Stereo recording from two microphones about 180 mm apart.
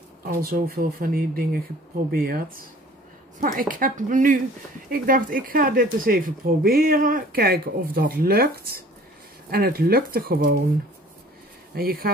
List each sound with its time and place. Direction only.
0.2 s speech: 55° right (ahead or behind)
11.7 s speech: 55° right (ahead or behind)